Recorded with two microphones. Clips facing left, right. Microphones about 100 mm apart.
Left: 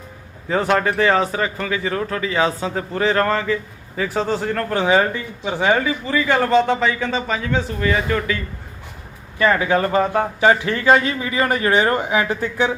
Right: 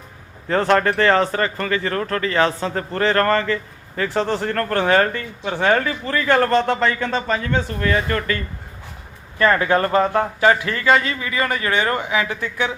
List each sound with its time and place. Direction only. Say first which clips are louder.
0.4 s speech: right 1 dB; 5° left (ahead or behind)
9.4 s speech: even; 10° left (ahead or behind); by 12.7 s 30° left (ahead or behind)